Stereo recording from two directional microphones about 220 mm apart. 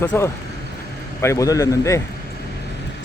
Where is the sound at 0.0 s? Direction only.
10° left (ahead or behind).